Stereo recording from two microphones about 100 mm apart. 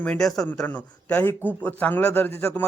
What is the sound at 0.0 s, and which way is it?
Speech, 10° left (ahead or behind).